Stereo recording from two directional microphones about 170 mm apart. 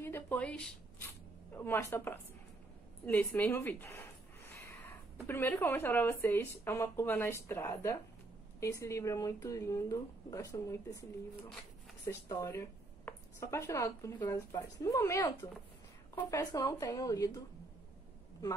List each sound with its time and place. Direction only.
0.0 s a sound: 10° left (ahead or behind)
1.5 s speech: 15° left (ahead or behind)
5.2 s speech: 15° left (ahead or behind)
12.1 s a woman's voice: 20° left (ahead or behind)